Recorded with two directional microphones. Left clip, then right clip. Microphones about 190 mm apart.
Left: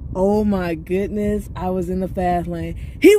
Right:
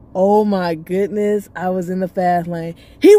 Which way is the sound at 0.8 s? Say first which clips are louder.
Right 3 dB; 75° right (ahead or behind).